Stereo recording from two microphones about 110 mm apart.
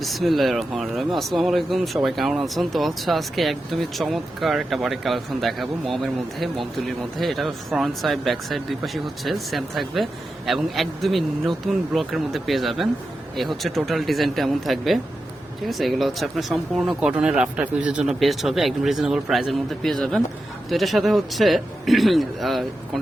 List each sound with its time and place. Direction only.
0.0 s speech: centre (ahead or behind)